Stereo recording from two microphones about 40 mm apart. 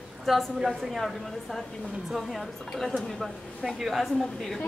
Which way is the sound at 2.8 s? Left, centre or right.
Centre.